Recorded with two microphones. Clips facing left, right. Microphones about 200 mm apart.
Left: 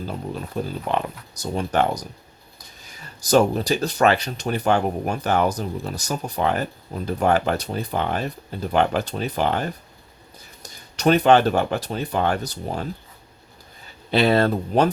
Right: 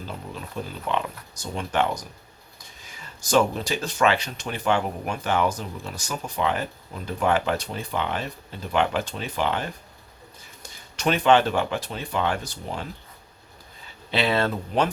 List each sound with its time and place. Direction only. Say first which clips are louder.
0.5 s speech: left 3 dB; 45° left (ahead or behind)
14.1 s speech: left 5 dB; 40° left (ahead or behind)